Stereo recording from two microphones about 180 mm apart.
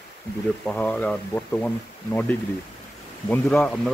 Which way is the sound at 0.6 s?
5° left (ahead or behind).